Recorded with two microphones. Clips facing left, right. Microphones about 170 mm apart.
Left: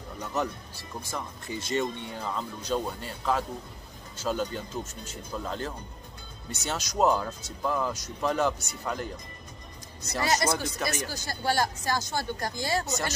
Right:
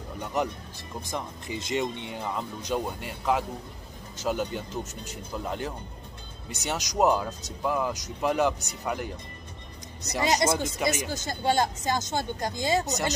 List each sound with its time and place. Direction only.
0.2 s speech: 15° right (ahead or behind)